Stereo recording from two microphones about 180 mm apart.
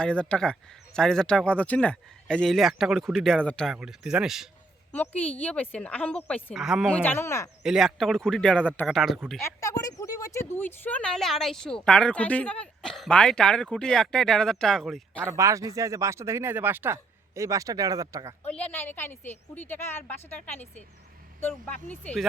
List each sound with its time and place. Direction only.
0.0 s speech: 5° left (ahead or behind)
3.8 s speech: 5° right (ahead or behind)
4.9 s a woman's voice: 10° left (ahead or behind)
6.9 s a woman's voice: 10° left (ahead or behind)
7.6 s speech: centre (ahead or behind)
9.0 s speech: centre (ahead or behind)
9.4 s speech: 15° left (ahead or behind); by 15.2 s centre (ahead or behind)
15.2 s speech: 15° right (ahead or behind)
18.4 s a woman's voice: 10° left (ahead or behind)